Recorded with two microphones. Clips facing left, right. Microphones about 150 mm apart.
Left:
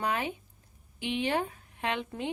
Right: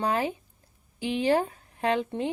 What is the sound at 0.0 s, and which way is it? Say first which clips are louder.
A woman's voice: right 5 dB; 35° right (ahead or behind).